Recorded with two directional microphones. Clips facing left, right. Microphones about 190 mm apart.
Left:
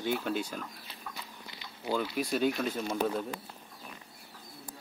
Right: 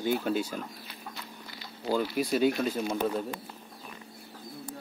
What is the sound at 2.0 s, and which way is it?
Speech, 5° right (ahead or behind).